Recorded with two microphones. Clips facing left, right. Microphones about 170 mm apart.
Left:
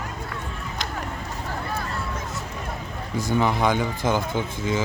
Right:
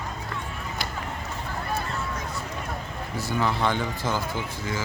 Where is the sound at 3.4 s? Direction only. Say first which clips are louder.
Left 3 dB; 15° left (ahead or behind).